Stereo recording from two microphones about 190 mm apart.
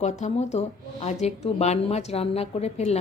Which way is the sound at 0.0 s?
35° left (ahead or behind).